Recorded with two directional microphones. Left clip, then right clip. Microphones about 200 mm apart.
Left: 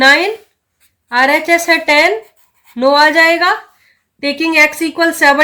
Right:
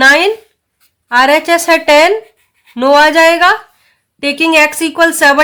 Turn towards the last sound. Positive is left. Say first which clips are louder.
# right 3 dB
turn(degrees=-45)  # may be behind; listen again after turning